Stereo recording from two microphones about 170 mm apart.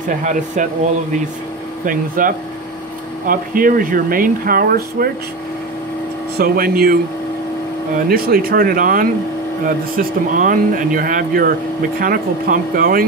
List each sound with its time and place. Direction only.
0.2 s speech: 50° right (ahead or behind)
1.9 s speech: 55° right (ahead or behind)
6.3 s speech: 60° right (ahead or behind)
8.1 s speech: 60° right (ahead or behind)